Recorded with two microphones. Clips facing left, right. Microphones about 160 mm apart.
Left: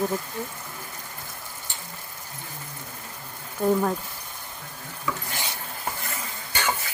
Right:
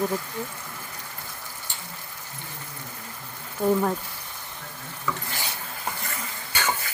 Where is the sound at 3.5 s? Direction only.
Centre (ahead or behind).